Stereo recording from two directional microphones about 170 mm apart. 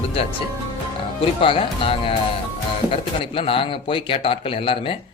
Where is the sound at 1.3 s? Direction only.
30° left (ahead or behind).